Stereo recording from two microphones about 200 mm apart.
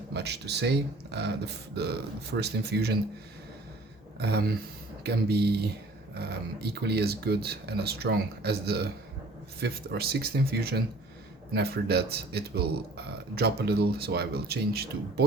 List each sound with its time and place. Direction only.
0.1 s speech: 55° right (ahead or behind)
4.2 s a man's voice: 50° right (ahead or behind)